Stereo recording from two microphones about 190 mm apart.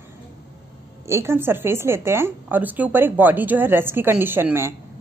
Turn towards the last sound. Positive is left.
turn(degrees=-10)  # may be behind; listen again after turning